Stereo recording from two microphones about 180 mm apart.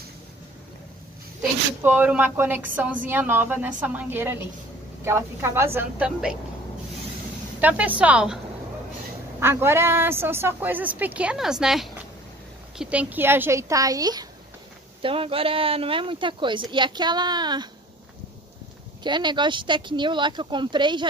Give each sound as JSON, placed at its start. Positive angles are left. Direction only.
{"t": 1.8, "sound": "a woman's voice", "side_deg": -10}
{"t": 7.6, "sound": "a woman's voice", "side_deg": -10}
{"t": 9.4, "sound": "a woman's voice", "side_deg": -15}
{"t": 15.0, "sound": "speech", "side_deg": -30}
{"t": 19.0, "sound": "speech", "side_deg": -25}